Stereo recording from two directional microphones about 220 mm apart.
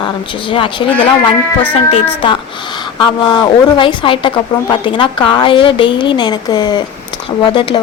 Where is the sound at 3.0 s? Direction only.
20° left (ahead or behind).